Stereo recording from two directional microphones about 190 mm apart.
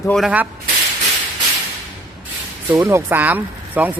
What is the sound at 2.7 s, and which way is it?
Speech, 15° right (ahead or behind).